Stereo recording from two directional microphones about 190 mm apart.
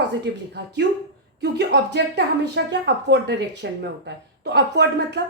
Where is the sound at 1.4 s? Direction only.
60° right (ahead or behind).